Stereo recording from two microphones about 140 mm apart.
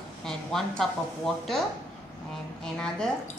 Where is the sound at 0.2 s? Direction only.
5° left (ahead or behind).